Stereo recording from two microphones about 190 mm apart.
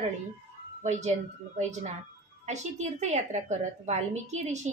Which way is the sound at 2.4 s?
40° right (ahead or behind).